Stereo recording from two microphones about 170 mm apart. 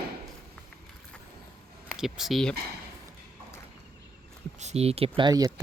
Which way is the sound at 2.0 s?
Centre (ahead or behind).